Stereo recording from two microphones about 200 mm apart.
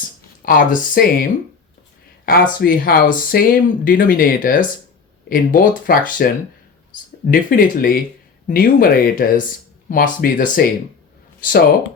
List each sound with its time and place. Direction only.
0.4 s speech: 45° left (ahead or behind)
2.2 s speech: 45° left (ahead or behind)
7.3 s speech: 45° left (ahead or behind)